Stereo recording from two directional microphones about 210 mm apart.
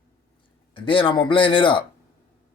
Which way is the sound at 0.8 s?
25° left (ahead or behind).